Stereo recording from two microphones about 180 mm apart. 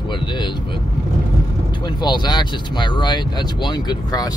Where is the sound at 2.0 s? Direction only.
25° left (ahead or behind).